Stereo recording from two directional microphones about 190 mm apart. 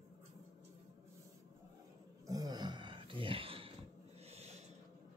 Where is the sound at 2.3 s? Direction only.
20° right (ahead or behind).